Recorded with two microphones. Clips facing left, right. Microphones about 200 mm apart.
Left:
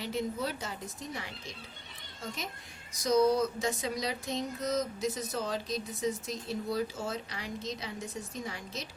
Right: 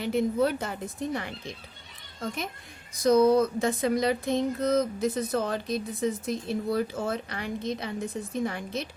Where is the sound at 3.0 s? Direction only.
55° right (ahead or behind).